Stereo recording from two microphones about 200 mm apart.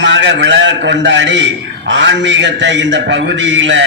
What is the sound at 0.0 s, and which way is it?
A man's voice, 65° right (ahead or behind).